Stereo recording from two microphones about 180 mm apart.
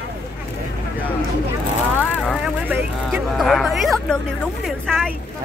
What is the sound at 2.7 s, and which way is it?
Speech, centre (ahead or behind).